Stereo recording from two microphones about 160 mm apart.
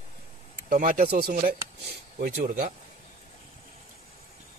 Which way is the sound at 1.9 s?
60° right (ahead or behind).